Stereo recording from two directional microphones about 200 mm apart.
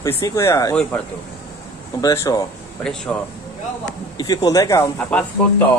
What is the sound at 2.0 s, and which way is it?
Speech, 15° left (ahead or behind).